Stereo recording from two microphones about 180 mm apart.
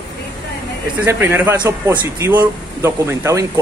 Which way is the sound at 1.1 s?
10° right (ahead or behind).